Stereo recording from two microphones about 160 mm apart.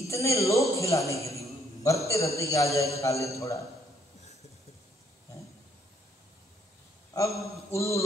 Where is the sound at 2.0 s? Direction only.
20° left (ahead or behind).